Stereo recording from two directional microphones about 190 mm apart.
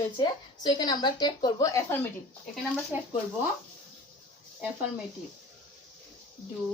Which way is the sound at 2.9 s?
5° right (ahead or behind).